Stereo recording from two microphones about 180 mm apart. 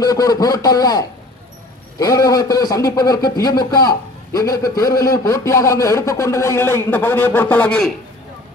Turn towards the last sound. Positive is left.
turn(degrees=5)  # may be behind; listen again after turning